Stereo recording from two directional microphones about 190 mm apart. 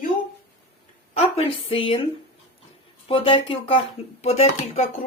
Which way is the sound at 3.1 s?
30° left (ahead or behind).